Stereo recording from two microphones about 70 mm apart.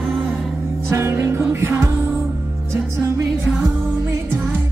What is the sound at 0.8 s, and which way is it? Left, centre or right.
Music, right.